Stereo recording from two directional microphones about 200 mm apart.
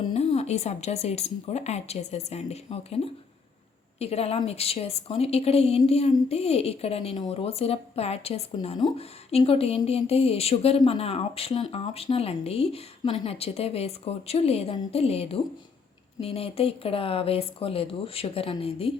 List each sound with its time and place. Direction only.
0.1 s a woman's voice: 30° left (ahead or behind)